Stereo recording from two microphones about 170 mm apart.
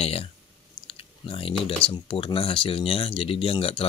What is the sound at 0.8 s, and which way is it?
Chewing, 35° left (ahead or behind).